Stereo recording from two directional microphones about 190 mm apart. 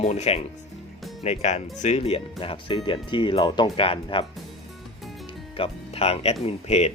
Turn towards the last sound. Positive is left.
turn(degrees=35)  # may be behind; listen again after turning